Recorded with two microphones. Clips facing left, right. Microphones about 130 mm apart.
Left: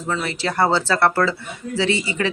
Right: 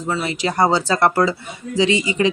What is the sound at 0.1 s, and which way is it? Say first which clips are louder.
Speech: right 2 dB; 15° right (ahead or behind).